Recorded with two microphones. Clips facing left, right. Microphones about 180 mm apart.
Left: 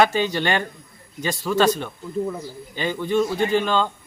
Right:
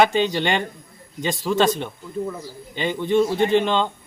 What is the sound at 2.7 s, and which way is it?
Speech, 20° right (ahead or behind).